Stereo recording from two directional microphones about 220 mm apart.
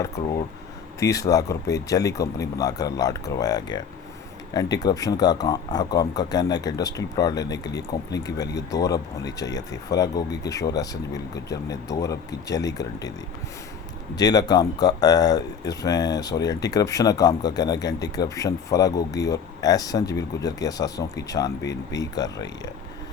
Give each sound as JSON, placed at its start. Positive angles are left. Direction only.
{"t": 0.9, "sound": "speech", "side_deg": 15}
{"t": 14.2, "sound": "speech", "side_deg": 15}